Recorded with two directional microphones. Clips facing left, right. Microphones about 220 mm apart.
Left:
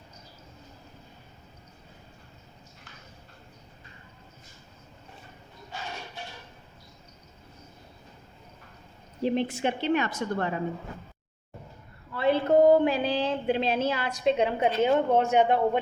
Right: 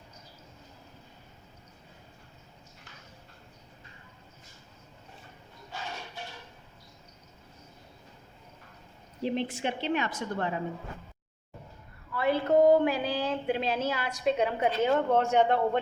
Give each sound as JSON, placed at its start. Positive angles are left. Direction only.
{"t": 9.2, "sound": "a woman's voice", "side_deg": 45}
{"t": 12.1, "sound": "a woman's voice", "side_deg": 25}